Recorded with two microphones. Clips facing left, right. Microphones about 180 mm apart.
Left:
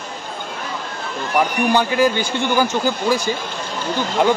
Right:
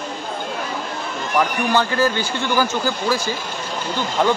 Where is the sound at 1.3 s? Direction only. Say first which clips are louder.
Left 2 dB; 15° left (ahead or behind).